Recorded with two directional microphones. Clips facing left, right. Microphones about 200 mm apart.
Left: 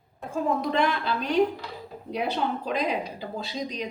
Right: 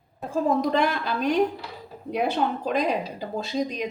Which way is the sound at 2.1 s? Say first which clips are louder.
Right 3 dB; 50° right (ahead or behind).